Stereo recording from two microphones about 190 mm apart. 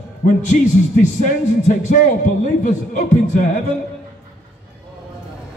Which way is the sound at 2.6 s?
45° left (ahead or behind).